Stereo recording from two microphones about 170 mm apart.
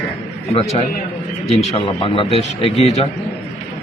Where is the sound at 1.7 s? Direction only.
30° left (ahead or behind).